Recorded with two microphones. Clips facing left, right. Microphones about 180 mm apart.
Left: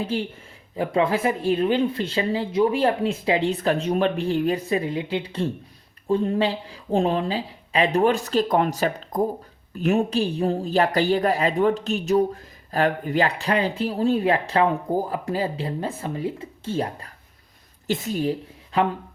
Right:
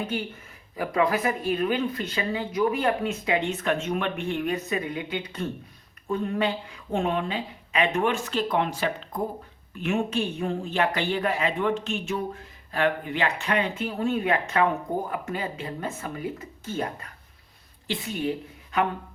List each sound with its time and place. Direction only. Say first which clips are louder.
0.0 s a woman's voice: left 4 dB; 30° left (ahead or behind)